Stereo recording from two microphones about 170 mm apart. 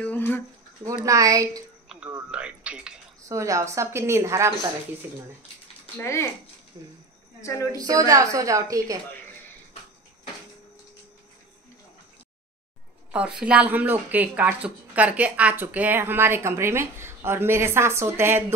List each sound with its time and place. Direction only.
0.0 s a sound: 10° left (ahead or behind)
1.0 s a woman's voice: 20° right (ahead or behind)
1.9 s a sound: 10° right (ahead or behind)
3.3 s speech: 20° right (ahead or behind)
5.9 s speech: 15° left (ahead or behind)
7.7 s a woman's voice: 20° right (ahead or behind)
13.1 s speech: 5° right (ahead or behind)